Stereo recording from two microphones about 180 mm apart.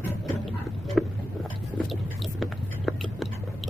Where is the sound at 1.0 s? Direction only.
Centre (ahead or behind).